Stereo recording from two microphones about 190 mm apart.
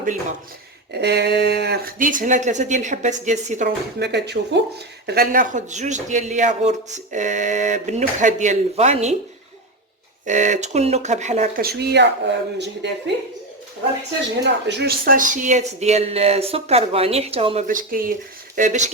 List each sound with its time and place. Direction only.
0.9 s speech: 60° right (ahead or behind); by 3.7 s 40° right (ahead or behind)
4.0 s speech: 65° right (ahead or behind)
5.0 s a man's voice: 50° right (ahead or behind); by 9.1 s 35° right (ahead or behind)
10.2 s a man's voice: 40° right (ahead or behind)
11.6 s speech: 55° right (ahead or behind)
14.4 s a man's voice: 60° right (ahead or behind); by 18.9 s 40° right (ahead or behind)